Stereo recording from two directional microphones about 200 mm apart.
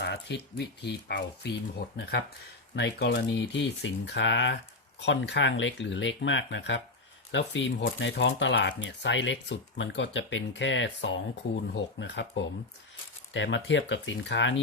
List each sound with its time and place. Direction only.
0.0 s speech: 60° left (ahead or behind)